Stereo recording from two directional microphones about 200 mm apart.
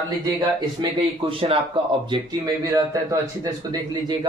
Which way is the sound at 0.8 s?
25° right (ahead or behind).